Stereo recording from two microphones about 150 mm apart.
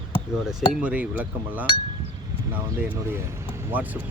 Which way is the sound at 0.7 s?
10° right (ahead or behind).